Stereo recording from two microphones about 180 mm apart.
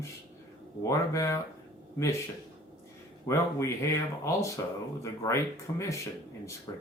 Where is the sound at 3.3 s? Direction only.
15° left (ahead or behind).